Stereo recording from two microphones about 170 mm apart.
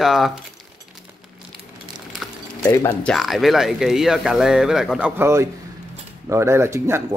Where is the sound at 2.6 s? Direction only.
20° left (ahead or behind).